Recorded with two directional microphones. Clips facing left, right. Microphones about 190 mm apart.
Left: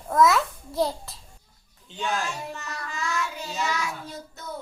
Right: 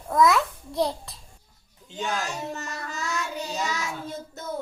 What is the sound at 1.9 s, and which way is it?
Child singing, 40° right (ahead or behind).